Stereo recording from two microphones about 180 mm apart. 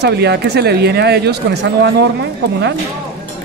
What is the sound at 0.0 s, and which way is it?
Speech, 65° right (ahead or behind).